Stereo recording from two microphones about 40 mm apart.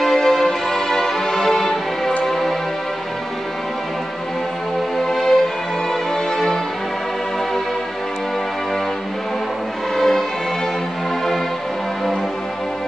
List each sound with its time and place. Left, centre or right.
0.0 s music: centre
4.9 s music: centre
6.3 s music: centre
9.9 s music: centre